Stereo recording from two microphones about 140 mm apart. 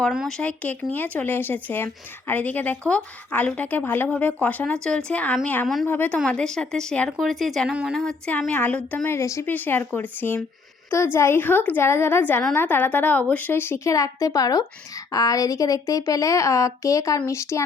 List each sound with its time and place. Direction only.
0.1 s speech: 5° right (ahead or behind)
0.3 s speech: 10° left (ahead or behind); by 8.0 s 5° right (ahead or behind)
8.0 s a woman's voice: 10° left (ahead or behind)